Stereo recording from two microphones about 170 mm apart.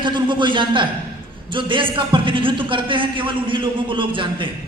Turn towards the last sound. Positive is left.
turn(degrees=-30)  # may be behind; listen again after turning